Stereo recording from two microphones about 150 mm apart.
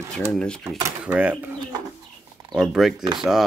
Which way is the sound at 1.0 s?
10° right (ahead or behind).